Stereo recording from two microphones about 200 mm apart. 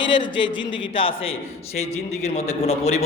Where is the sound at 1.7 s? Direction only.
30° left (ahead or behind).